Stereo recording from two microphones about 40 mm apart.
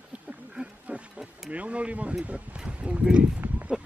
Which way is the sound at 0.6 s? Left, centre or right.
Right.